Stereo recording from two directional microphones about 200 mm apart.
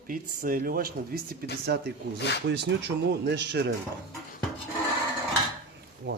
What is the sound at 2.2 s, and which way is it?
Speech, 60° left (ahead or behind).